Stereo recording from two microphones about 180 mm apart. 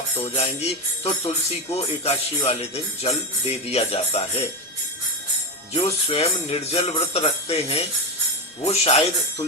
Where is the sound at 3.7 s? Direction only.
35° left (ahead or behind).